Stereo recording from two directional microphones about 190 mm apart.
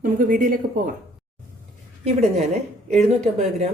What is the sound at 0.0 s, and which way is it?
Speech, 45° right (ahead or behind).